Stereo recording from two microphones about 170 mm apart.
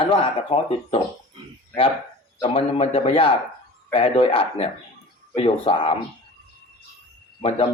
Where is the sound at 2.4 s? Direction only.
30° left (ahead or behind).